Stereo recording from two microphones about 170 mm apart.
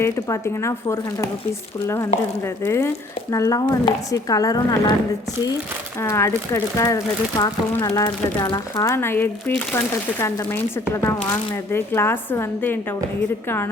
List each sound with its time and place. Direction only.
0.0 s speech: 15° left (ahead or behind)
2.6 s speech: 15° left (ahead or behind)
6.0 s speech: 15° left (ahead or behind)